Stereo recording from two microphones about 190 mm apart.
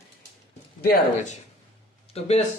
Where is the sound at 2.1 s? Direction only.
35° left (ahead or behind).